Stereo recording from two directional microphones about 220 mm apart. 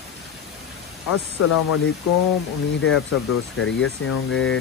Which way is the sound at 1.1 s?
90° left.